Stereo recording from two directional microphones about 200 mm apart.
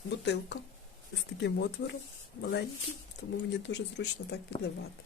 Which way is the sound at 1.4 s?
60° left (ahead or behind).